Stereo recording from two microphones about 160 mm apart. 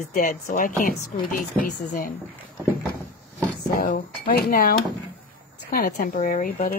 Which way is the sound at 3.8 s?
65° left (ahead or behind).